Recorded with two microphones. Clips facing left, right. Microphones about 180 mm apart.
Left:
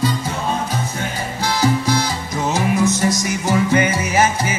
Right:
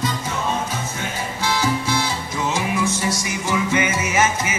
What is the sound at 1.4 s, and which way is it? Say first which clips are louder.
Music: left 4 dB; 40° left (ahead or behind).